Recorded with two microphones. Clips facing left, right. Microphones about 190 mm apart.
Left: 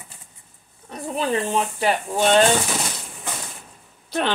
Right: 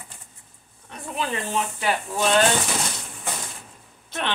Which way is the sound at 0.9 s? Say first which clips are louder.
Left 5 dB; 35° left (ahead or behind).